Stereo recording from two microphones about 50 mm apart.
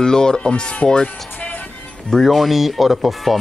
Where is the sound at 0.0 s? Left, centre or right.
Centre.